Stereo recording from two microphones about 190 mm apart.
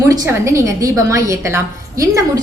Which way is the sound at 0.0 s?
15° right (ahead or behind).